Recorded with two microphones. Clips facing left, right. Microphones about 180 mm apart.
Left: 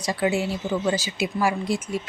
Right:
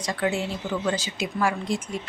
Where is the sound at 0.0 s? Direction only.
10° left (ahead or behind).